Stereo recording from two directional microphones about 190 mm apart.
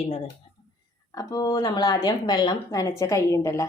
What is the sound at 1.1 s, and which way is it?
A woman's voice, 20° left (ahead or behind).